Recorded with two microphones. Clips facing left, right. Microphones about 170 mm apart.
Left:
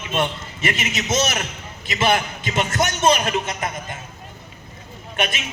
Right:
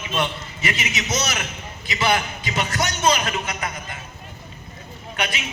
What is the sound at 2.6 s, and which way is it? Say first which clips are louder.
Speech: left 3 dB; 50° left (ahead or behind).